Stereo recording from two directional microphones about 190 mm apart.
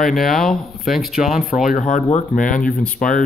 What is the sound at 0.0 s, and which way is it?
Speech, centre (ahead or behind).